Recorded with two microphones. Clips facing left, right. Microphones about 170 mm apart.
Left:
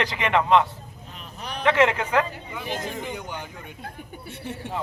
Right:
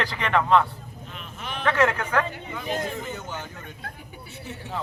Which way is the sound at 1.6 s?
15° left (ahead or behind).